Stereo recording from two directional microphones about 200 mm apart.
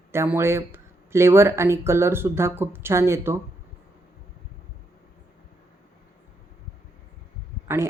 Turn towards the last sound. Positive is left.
turn(degrees=-10)  # may be behind; listen again after turning